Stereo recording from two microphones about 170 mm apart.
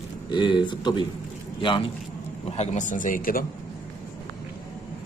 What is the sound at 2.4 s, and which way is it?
A man's voice, 40° left (ahead or behind).